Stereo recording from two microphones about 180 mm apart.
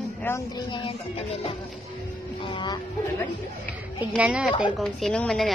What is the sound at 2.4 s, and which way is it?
Music, 25° left (ahead or behind).